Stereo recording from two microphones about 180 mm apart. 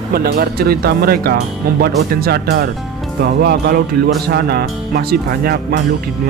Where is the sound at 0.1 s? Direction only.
60° right (ahead or behind).